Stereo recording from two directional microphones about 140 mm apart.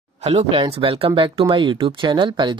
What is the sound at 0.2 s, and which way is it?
Speech, 50° right (ahead or behind).